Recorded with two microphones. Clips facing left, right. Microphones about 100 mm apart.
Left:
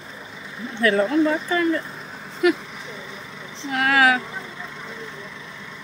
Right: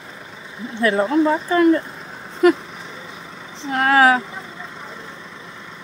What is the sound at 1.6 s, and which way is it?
Speech, 45° right (ahead or behind).